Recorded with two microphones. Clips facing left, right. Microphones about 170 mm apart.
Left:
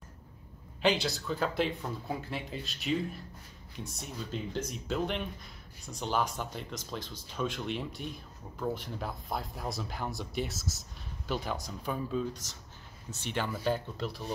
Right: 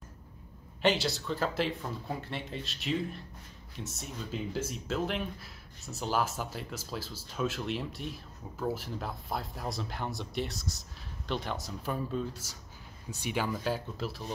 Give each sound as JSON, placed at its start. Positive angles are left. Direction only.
{"t": 0.8, "sound": "speech", "side_deg": 0}